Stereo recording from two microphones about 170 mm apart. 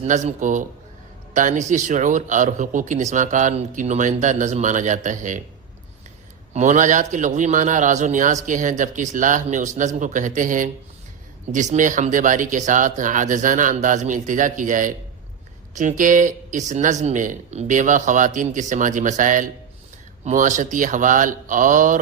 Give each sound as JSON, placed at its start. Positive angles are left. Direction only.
{"t": 0.0, "sound": "a man's voice", "side_deg": -40}
{"t": 6.5, "sound": "a man's voice", "side_deg": -45}